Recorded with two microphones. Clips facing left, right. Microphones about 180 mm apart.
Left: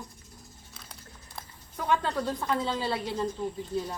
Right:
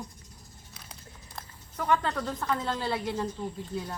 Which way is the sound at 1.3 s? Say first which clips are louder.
Right 2 dB; 5° left (ahead or behind).